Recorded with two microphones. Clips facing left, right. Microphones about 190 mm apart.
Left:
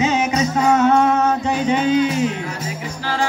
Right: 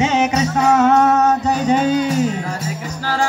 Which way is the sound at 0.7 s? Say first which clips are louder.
Right 2 dB; 45° right (ahead or behind).